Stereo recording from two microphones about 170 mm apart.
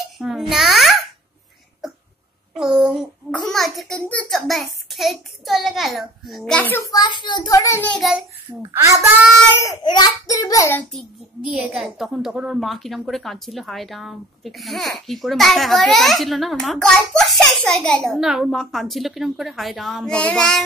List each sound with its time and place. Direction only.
0.2 s babbling: centre (ahead or behind)
2.5 s a child's voice: 5° right (ahead or behind); by 6.9 s 10° left (ahead or behind)
6.9 s a child's voice: 25° left (ahead or behind); by 8.3 s centre (ahead or behind)
9.6 s a child's voice: 20° left (ahead or behind)
10.9 s a child's voice: centre (ahead or behind)